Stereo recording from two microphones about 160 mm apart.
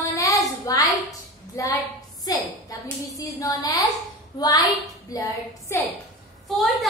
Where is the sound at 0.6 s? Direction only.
25° left (ahead or behind).